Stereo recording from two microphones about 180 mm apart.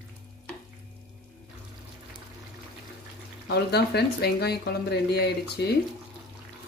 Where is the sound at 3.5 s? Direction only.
65° left (ahead or behind).